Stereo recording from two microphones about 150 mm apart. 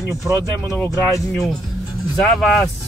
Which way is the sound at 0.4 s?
20° left (ahead or behind).